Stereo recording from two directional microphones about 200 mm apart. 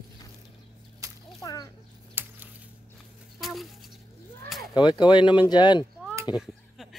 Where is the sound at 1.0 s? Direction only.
15° right (ahead or behind).